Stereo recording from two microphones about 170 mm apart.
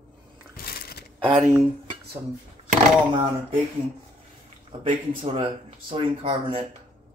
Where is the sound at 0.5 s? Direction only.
65° left (ahead or behind).